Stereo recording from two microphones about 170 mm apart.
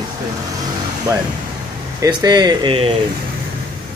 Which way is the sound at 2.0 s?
25° right (ahead or behind).